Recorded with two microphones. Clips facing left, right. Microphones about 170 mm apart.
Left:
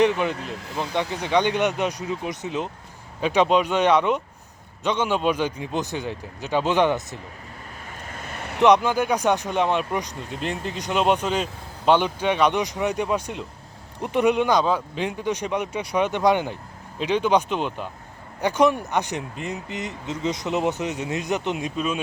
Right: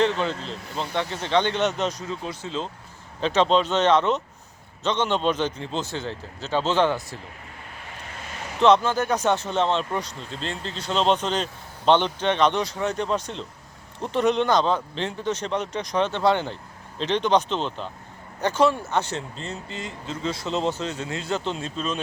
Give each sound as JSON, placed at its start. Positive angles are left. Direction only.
{"t": 0.0, "sound": "speech", "side_deg": 15}
{"t": 8.6, "sound": "speech", "side_deg": 15}